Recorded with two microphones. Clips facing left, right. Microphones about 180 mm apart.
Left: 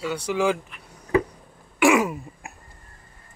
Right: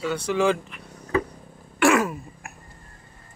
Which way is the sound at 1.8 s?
15° left (ahead or behind).